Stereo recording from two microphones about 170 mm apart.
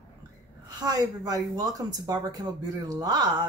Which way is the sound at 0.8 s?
20° right (ahead or behind).